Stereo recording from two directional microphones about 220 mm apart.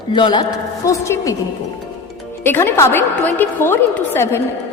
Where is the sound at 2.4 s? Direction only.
10° left (ahead or behind).